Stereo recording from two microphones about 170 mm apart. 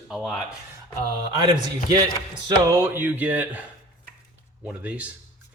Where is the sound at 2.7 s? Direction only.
15° right (ahead or behind).